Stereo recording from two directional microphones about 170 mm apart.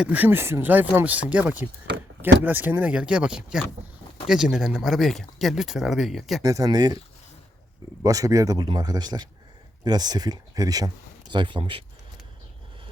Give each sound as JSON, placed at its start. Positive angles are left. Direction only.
{"t": 0.0, "sound": "speech", "side_deg": -10}
{"t": 6.4, "sound": "speech", "side_deg": -20}
{"t": 8.0, "sound": "speech", "side_deg": -20}